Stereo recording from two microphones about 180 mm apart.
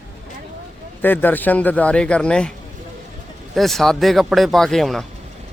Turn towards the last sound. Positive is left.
turn(degrees=0)  # may be behind; listen again after turning